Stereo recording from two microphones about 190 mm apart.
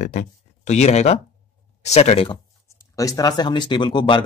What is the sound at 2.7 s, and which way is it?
Speech, 15° left (ahead or behind).